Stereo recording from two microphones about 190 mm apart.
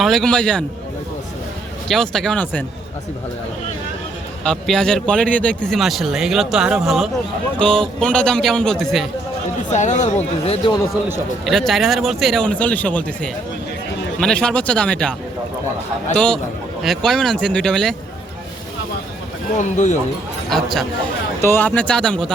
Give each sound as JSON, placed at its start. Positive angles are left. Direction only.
{"t": 0.0, "sound": "speech", "side_deg": 0}
{"t": 1.9, "sound": "speech", "side_deg": 0}
{"t": 4.4, "sound": "speech", "side_deg": 5}
{"t": 9.7, "sound": "speech", "side_deg": 40}
{"t": 11.4, "sound": "speech", "side_deg": 0}
{"t": 16.1, "sound": "speech", "side_deg": 5}
{"t": 19.5, "sound": "speech", "side_deg": 40}
{"t": 20.5, "sound": "speech", "side_deg": 0}